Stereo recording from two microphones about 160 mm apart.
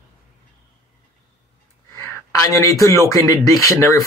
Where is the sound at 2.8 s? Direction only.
20° left (ahead or behind).